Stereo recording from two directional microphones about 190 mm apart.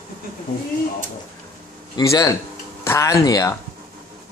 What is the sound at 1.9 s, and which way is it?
Speech, 20° left (ahead or behind).